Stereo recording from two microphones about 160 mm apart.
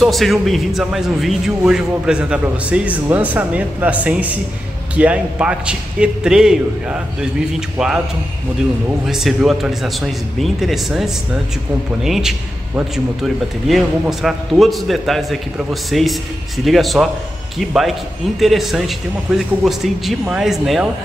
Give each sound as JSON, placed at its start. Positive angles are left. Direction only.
{"t": 0.0, "sound": "a man's voice", "side_deg": 0}
{"t": 9.0, "sound": "a man's voice", "side_deg": 0}